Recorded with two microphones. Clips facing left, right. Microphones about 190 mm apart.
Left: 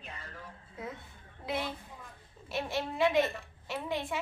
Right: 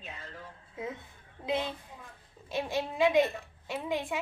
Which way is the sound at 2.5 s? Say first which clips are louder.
Right 2 dB; 15° right (ahead or behind).